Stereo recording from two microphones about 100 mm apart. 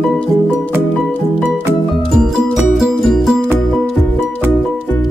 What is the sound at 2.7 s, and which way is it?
Music, centre (ahead or behind).